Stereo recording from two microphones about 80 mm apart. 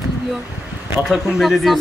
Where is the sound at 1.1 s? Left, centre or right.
Centre.